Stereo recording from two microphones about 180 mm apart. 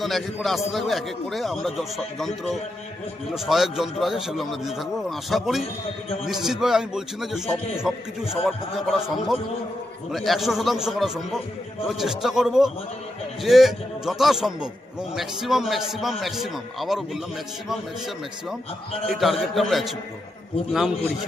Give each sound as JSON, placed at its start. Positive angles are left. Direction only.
{"t": 0.0, "sound": "a man's voice", "side_deg": 0}
{"t": 19.0, "sound": "a man's voice", "side_deg": 0}